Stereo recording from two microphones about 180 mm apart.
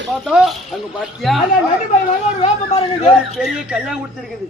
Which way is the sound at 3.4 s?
5° right (ahead or behind).